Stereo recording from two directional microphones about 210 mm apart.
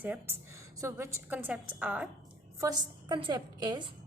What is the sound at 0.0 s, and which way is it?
A woman's voice, 10° right (ahead or behind).